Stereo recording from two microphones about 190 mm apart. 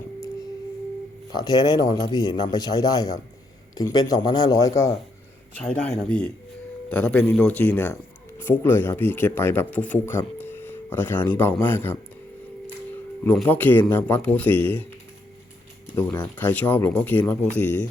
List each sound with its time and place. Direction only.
1.3 s a man's voice: 20° left (ahead or behind)
5.5 s speech: 5° left (ahead or behind)
13.2 s speech: 5° left (ahead or behind)
16.4 s speech: 10° left (ahead or behind)